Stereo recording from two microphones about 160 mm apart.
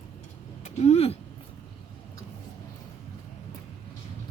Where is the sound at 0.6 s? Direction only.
45° left (ahead or behind).